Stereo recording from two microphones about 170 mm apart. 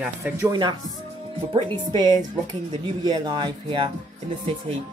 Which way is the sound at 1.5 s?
25° right (ahead or behind).